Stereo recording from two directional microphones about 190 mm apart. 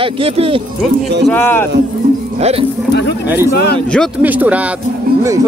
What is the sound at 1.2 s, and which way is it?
Speech, 10° left (ahead or behind).